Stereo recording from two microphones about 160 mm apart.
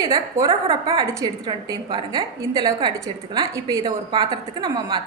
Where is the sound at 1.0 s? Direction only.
20° right (ahead or behind).